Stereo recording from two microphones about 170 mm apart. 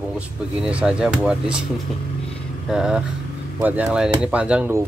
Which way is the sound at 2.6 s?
5° right (ahead or behind).